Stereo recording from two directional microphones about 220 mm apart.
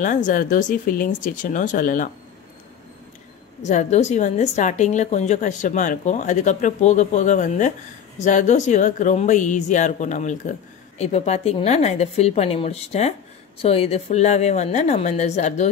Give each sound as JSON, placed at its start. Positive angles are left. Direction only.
{"t": 0.0, "sound": "a woman's voice", "side_deg": 35}
{"t": 3.6, "sound": "a woman's voice", "side_deg": 30}